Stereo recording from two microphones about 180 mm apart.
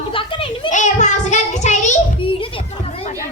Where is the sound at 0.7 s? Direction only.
45° left (ahead or behind).